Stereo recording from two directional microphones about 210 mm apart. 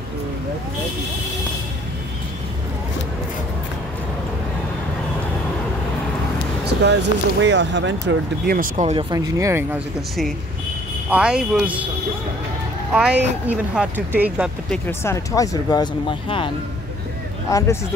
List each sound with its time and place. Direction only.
6.6 s speech: 55° right (ahead or behind)
8.5 s speech: 35° right (ahead or behind)
9.1 s speech: 15° right (ahead or behind)
11.1 s speech: 5° right (ahead or behind)
12.9 s speech: 5° right (ahead or behind)
14.7 s speech: 10° left (ahead or behind)